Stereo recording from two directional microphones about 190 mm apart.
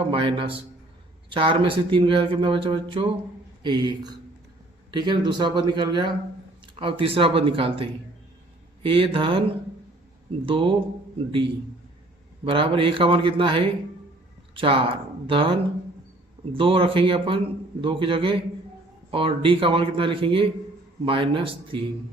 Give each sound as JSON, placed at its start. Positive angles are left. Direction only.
{"t": 0.0, "sound": "a man's voice", "side_deg": -25}
{"t": 10.4, "sound": "a man's voice", "side_deg": -25}